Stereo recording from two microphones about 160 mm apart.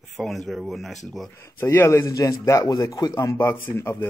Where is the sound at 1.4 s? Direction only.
15° left (ahead or behind).